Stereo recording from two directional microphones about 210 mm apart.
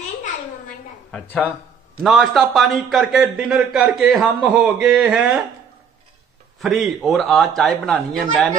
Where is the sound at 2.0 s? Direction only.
Centre (ahead or behind).